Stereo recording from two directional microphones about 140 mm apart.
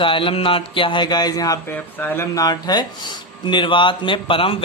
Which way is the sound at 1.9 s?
15° left (ahead or behind).